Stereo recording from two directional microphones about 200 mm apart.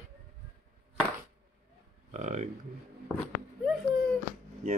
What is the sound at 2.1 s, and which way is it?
Speech, 35° right (ahead or behind).